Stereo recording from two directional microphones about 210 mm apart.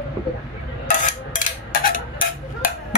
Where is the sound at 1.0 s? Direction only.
40° left (ahead or behind).